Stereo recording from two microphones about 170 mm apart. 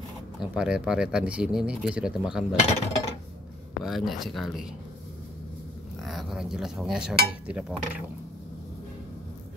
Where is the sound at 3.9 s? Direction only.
Centre (ahead or behind).